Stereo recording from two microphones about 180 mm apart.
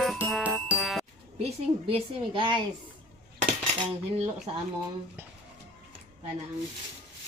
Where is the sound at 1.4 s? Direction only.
35° right (ahead or behind).